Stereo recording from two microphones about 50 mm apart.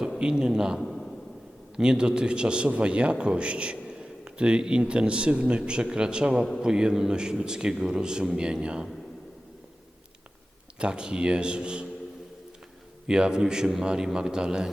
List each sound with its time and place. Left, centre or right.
0.2 s a man's voice: centre
0.8 s a sound: centre
1.7 s a man's voice: centre
10.8 s speech: centre
13.1 s a man's voice: centre